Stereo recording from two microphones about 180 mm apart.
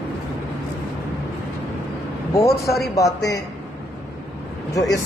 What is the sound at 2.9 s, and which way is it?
Speech, 20° left (ahead or behind).